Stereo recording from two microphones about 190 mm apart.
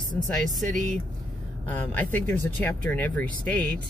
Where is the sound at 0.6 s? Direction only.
40° right (ahead or behind).